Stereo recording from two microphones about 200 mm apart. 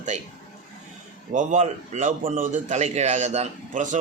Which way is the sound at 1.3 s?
35° right (ahead or behind).